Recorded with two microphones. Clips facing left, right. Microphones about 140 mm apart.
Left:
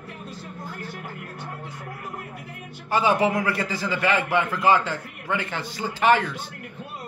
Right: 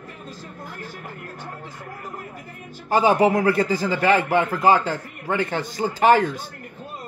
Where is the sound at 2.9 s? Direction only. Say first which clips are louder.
Right 4 dB; 40° right (ahead or behind).